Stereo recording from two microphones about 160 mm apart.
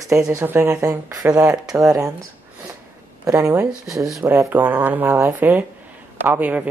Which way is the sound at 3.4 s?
15° right (ahead or behind).